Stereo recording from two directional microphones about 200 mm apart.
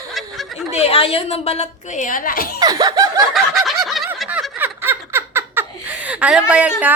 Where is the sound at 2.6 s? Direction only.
20° right (ahead or behind).